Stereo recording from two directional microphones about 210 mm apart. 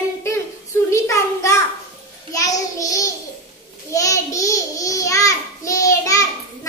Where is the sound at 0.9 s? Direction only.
15° left (ahead or behind).